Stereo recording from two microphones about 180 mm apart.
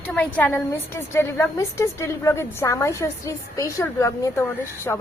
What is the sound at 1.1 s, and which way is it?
A woman's voice, 15° left (ahead or behind).